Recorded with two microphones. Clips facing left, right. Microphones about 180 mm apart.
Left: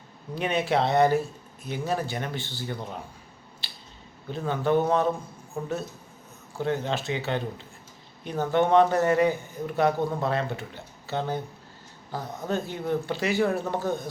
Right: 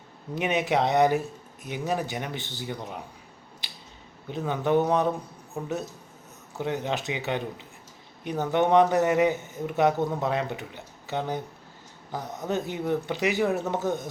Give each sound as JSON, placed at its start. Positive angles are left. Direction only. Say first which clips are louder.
{"t": 0.3, "sound": "a man's voice", "louder": "even", "side_deg": -15}
{"t": 3.6, "sound": "a sound", "louder": "even", "side_deg": -15}
{"t": 4.3, "sound": "a man's voice", "louder": "even", "side_deg": -15}